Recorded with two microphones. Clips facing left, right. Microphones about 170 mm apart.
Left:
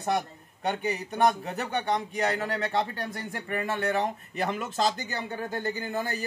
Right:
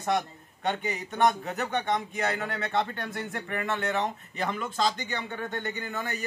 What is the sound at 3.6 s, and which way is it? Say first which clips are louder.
Speech: left 1 dB; 35° left (ahead or behind).